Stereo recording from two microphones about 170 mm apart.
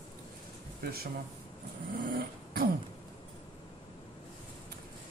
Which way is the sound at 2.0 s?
65° right (ahead or behind).